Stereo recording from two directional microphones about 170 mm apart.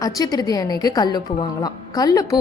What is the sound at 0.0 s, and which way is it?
A woman's voice, 20° left (ahead or behind).